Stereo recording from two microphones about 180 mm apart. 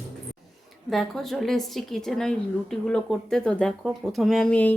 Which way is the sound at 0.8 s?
Centre (ahead or behind).